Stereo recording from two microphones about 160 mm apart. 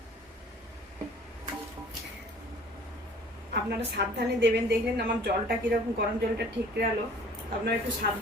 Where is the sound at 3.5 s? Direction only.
90° right.